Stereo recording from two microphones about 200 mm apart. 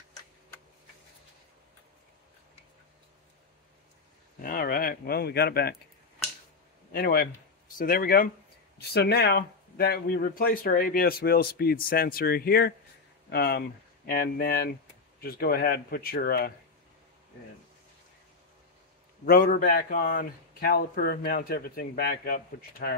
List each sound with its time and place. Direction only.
4.4 s speech: 45° left (ahead or behind)
6.9 s speech: 50° left (ahead or behind)
19.2 s speech: 45° left (ahead or behind)